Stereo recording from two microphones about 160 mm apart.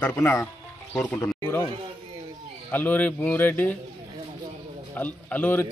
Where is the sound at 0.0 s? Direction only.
15° left (ahead or behind).